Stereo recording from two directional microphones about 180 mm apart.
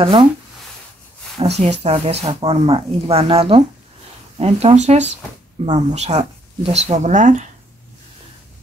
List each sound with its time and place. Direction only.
0.0 s speech: 30° right (ahead or behind)
1.4 s speech: 35° right (ahead or behind)